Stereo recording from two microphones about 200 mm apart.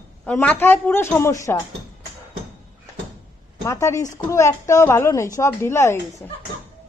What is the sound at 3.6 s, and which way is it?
A woman's voice, 15° left (ahead or behind).